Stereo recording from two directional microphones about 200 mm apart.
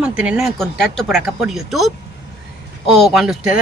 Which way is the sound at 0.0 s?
5° right (ahead or behind).